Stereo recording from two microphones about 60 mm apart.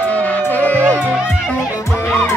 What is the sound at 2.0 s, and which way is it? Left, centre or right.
Music, left.